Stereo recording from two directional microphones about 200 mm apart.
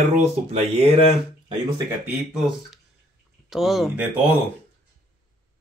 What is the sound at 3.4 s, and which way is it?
Speech, centre (ahead or behind).